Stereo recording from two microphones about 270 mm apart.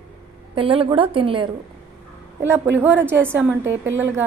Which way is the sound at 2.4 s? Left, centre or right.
Centre.